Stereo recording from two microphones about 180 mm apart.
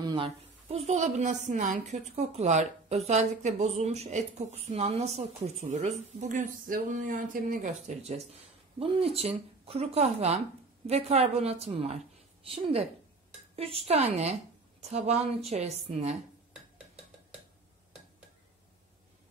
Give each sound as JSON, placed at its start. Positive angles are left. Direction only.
{"t": 0.0, "sound": "a woman's voice", "side_deg": -30}